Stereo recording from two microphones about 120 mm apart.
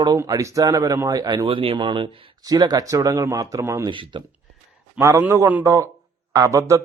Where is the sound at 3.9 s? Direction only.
40° right (ahead or behind).